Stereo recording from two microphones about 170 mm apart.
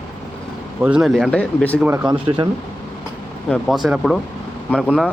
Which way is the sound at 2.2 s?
30° right (ahead or behind).